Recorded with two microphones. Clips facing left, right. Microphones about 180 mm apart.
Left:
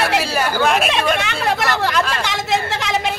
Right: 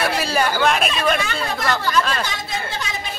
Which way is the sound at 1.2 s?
80° left.